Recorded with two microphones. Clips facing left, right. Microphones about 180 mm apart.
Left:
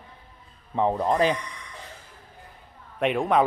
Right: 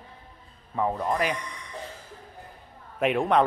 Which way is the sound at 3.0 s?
Centre (ahead or behind).